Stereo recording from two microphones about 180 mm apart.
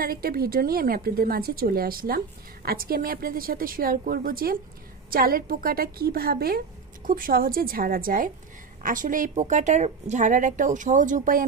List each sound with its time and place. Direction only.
0.0 s a woman's voice: 55° right (ahead or behind)